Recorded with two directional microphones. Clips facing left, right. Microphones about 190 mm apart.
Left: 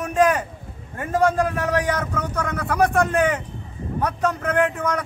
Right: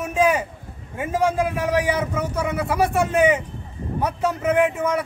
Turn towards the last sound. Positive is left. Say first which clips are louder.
# right 2 dB
turn(degrees=-5)  # may be behind; listen again after turning